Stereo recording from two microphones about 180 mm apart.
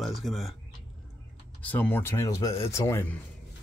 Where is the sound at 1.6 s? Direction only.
10° left (ahead or behind).